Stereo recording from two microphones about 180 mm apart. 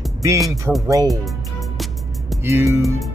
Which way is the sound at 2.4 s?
15° right (ahead or behind).